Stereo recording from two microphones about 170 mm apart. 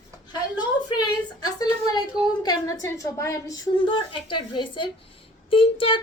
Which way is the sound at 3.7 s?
30° left (ahead or behind).